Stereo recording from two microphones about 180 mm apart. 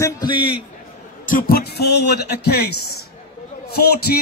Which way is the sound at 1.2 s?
50° left (ahead or behind).